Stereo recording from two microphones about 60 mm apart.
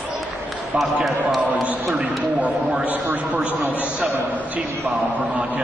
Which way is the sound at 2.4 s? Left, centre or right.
Right.